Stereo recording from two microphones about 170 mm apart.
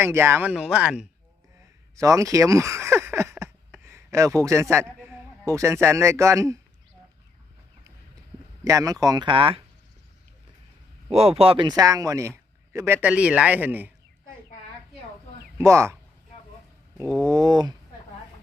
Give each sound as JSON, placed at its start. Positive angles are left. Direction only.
{"t": 0.0, "sound": "a man's voice", "side_deg": -15}
{"t": 2.0, "sound": "speech", "side_deg": -20}
{"t": 8.6, "sound": "speech", "side_deg": -20}
{"t": 11.1, "sound": "a man's voice", "side_deg": -35}
{"t": 15.5, "sound": "speech", "side_deg": -15}
{"t": 17.2, "sound": "speech", "side_deg": -20}